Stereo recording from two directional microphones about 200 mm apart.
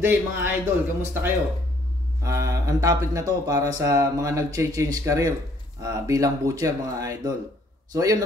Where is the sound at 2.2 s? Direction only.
15° right (ahead or behind).